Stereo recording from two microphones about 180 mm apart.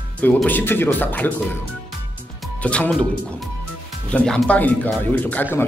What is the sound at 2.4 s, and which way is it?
A man's voice, 5° left (ahead or behind).